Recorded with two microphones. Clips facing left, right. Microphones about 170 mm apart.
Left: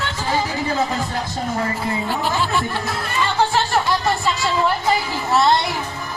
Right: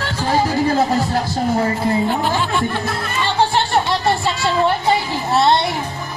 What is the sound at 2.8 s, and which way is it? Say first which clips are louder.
Music: right 1 dB; 30° right (ahead or behind).